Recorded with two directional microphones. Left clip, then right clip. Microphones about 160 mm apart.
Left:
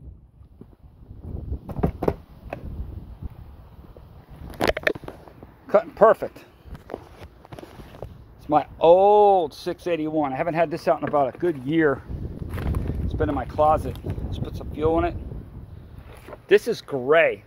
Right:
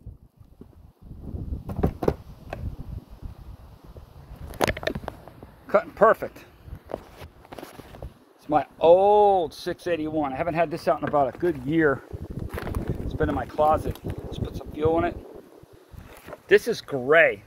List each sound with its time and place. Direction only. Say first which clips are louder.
1.7 s a sound: left 1 dB; 70° left (ahead or behind)
5.7 s speech: left 2 dB; 35° left (ahead or behind)
8.5 s speech: left 1 dB; 25° left (ahead or behind)
11.1 s speech: left 1 dB; 10° left (ahead or behind)
13.1 s speech: left 1 dB; 10° left (ahead or behind)
16.3 s speech: left 1 dB; 15° left (ahead or behind)